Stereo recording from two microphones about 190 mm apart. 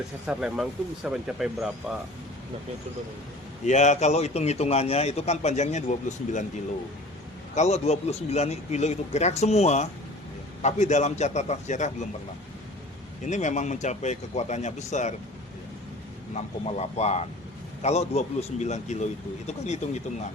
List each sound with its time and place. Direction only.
0.3 s speech: 5° right (ahead or behind)
3.7 s a man's voice: 40° left (ahead or behind)
7.5 s a man's voice: 35° left (ahead or behind)
13.2 s a man's voice: 40° left (ahead or behind)
16.3 s a man's voice: 35° left (ahead or behind)